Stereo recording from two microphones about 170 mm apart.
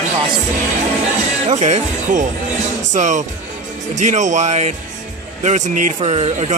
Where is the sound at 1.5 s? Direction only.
40° right (ahead or behind).